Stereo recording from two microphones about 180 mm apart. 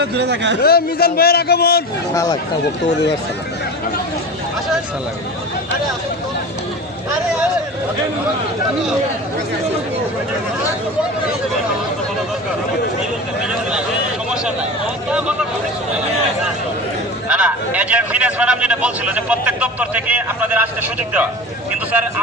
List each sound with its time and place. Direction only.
0.0 s speech: 70° right (ahead or behind)
0.6 s a man's voice: 60° left (ahead or behind)
2.1 s speech: 20° left (ahead or behind)
13.5 s a sound: 5° right (ahead or behind)
17.2 s a man's voice: 5° right (ahead or behind)